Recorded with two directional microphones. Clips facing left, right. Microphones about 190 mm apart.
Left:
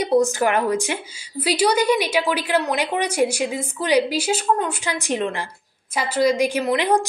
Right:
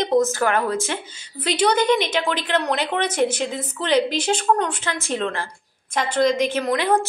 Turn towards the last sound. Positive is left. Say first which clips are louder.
# left 1 dB
turn(degrees=15)  # may be behind; listen again after turning